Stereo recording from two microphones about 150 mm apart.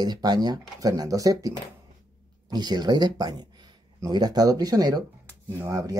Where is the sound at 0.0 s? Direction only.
30° right (ahead or behind).